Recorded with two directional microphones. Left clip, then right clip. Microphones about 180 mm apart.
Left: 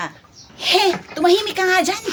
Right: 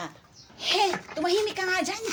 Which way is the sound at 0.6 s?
30° left (ahead or behind).